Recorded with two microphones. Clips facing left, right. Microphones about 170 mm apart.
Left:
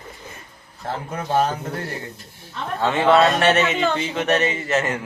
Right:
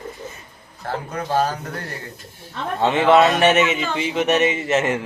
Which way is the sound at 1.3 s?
25° left (ahead or behind).